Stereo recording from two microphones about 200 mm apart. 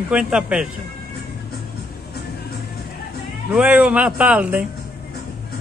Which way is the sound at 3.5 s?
5° right (ahead or behind).